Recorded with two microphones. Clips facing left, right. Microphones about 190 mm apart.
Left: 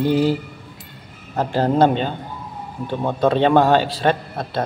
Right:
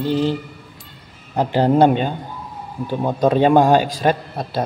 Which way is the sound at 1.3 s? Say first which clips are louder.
Right 3 dB; 15° right (ahead or behind).